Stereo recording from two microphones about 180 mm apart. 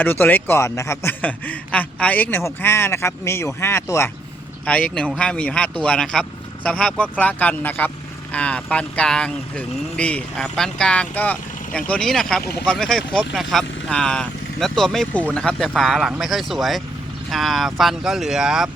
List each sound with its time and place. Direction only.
0.0 s a man's voice: 10° left (ahead or behind)
12.4 s speech: 60° left (ahead or behind)
12.6 s speech: centre (ahead or behind)